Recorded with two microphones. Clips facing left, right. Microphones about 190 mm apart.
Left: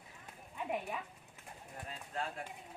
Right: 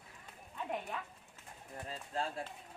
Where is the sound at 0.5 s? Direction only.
10° left (ahead or behind).